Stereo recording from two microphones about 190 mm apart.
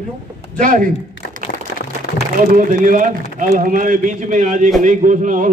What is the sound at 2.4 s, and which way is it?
A man's voice, 45° right (ahead or behind).